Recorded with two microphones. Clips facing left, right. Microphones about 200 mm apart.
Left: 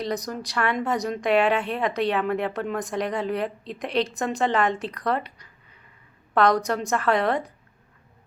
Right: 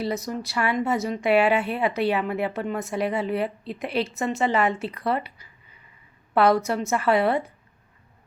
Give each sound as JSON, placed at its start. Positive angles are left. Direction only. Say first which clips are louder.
{"t": 0.0, "sound": "a woman's voice", "louder": "right 1 dB", "side_deg": -5}